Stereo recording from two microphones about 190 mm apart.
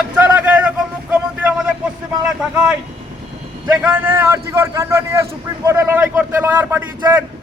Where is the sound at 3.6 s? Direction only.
10° right (ahead or behind).